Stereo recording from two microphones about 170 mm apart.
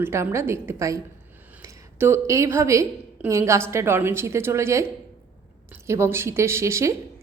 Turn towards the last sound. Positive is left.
turn(degrees=-15)  # may be behind; listen again after turning